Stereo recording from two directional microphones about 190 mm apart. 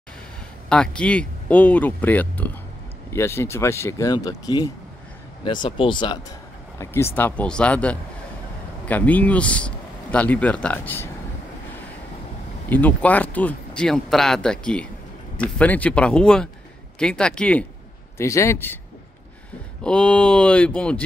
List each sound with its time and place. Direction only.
0.7 s speech: 5° left (ahead or behind); by 6.1 s 25° left (ahead or behind)
6.8 s speech: 15° left (ahead or behind)
12.6 s speech: 10° left (ahead or behind)
19.8 s speech: 5° left (ahead or behind)